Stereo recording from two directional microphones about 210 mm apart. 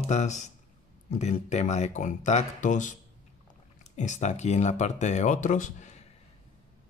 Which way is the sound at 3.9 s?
35° left (ahead or behind).